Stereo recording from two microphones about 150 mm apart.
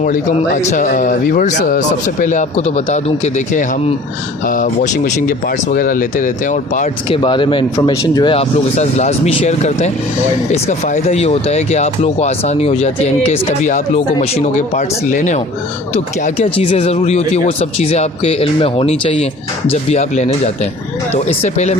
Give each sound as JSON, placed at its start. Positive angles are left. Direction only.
{"t": 0.3, "sound": "speech", "side_deg": 50}
{"t": 7.1, "sound": "speech", "side_deg": 35}
{"t": 8.3, "sound": "speech", "side_deg": 45}